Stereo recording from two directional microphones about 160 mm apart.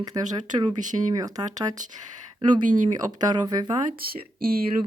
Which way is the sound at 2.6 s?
55° right (ahead or behind).